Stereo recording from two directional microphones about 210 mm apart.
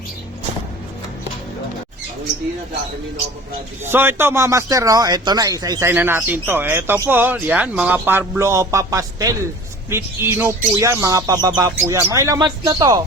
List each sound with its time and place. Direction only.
3.9 s a man's voice: 10° right (ahead or behind)